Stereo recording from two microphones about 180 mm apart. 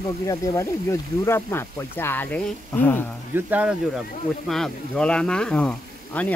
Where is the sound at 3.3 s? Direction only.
10° right (ahead or behind).